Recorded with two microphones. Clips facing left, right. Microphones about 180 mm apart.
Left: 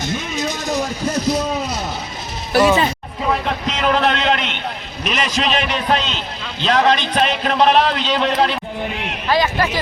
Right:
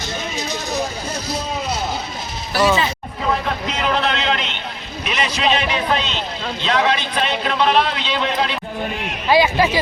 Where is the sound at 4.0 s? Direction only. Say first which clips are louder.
Left 3 dB; 50° left (ahead or behind).